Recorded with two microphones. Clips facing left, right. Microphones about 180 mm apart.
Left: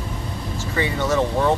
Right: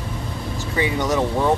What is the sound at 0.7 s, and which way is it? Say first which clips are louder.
Speech: even; 15° right (ahead or behind).